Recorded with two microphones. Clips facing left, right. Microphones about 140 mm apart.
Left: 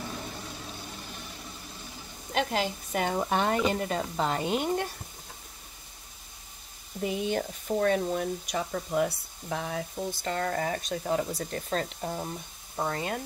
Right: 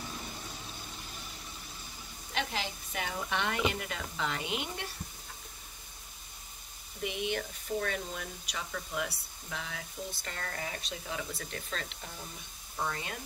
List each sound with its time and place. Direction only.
2.3 s speech: 45° left (ahead or behind)
7.0 s speech: 35° left (ahead or behind)